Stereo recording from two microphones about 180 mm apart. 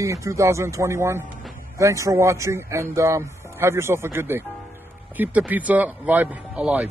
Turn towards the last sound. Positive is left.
turn(degrees=-10)  # may be behind; listen again after turning